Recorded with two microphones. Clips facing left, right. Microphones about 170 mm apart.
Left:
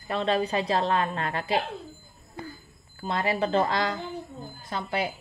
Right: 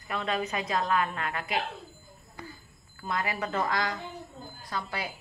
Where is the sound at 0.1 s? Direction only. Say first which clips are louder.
Left 6 dB; 30° left (ahead or behind).